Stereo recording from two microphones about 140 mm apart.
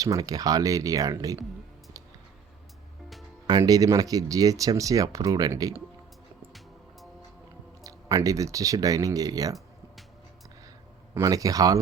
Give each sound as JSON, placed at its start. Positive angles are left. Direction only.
{"t": 0.0, "sound": "speech", "side_deg": -25}
{"t": 3.4, "sound": "speech", "side_deg": -25}
{"t": 7.9, "sound": "speech", "side_deg": -25}
{"t": 11.1, "sound": "speech", "side_deg": -25}